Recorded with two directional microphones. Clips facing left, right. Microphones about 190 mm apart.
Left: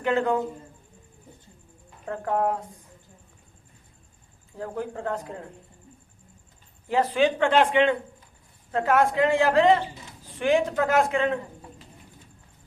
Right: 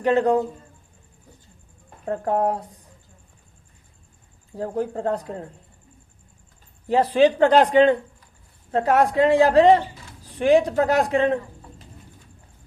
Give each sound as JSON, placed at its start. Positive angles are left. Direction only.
{"t": 0.0, "sound": "speech", "side_deg": -35}
{"t": 2.0, "sound": "speech", "side_deg": -35}
{"t": 4.5, "sound": "speech", "side_deg": -35}
{"t": 6.8, "sound": "speech", "side_deg": -35}